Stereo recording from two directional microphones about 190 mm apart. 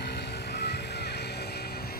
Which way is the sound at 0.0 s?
60° left (ahead or behind).